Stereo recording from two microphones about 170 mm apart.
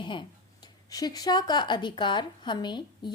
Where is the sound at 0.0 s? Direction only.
25° left (ahead or behind).